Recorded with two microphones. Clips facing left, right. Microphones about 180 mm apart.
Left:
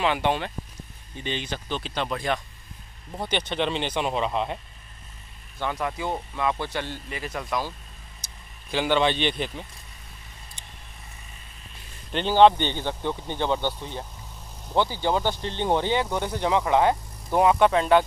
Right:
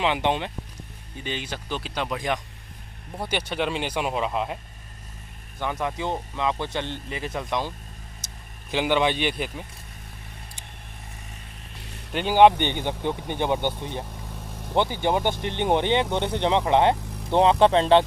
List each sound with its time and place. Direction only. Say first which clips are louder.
0.0 s speech: even; 20° right (ahead or behind)
1.2 s speech: left 1 dB; 10° right (ahead or behind)
5.6 s speech: right 1 dB; 15° right (ahead or behind)
8.7 s speech: even; 15° right (ahead or behind)
12.1 s speech: right 1 dB; 10° right (ahead or behind); by 18.0 s 30° right (ahead or behind)